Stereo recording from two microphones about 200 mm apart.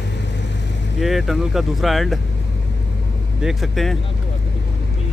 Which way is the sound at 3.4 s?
Centre (ahead or behind).